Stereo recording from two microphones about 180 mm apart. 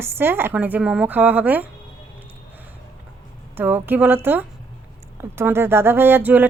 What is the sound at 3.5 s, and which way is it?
Speech, 10° right (ahead or behind).